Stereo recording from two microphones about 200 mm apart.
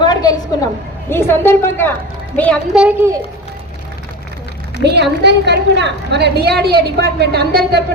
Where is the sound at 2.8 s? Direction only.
5° right (ahead or behind).